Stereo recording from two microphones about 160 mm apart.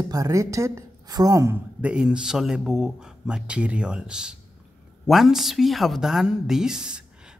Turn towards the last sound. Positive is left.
turn(degrees=-5)  # may be behind; listen again after turning